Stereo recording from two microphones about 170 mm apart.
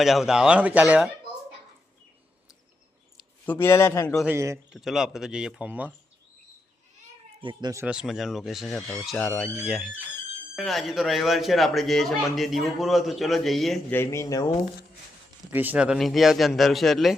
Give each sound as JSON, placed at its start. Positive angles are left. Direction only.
{"t": 0.0, "sound": "speech", "side_deg": 0}
{"t": 3.4, "sound": "a man's voice", "side_deg": 15}
{"t": 4.3, "sound": "a man's voice", "side_deg": -15}
{"t": 4.7, "sound": "speech", "side_deg": 0}
{"t": 7.4, "sound": "speech", "side_deg": -20}
{"t": 7.9, "sound": "speech", "side_deg": -5}
{"t": 13.9, "sound": "a man's voice", "side_deg": 15}
{"t": 15.5, "sound": "speech", "side_deg": -10}